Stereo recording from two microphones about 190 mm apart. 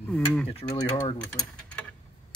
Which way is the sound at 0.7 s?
20° left (ahead or behind).